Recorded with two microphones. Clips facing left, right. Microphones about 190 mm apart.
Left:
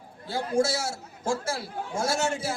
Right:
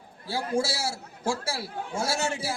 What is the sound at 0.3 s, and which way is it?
Speech, 30° right (ahead or behind).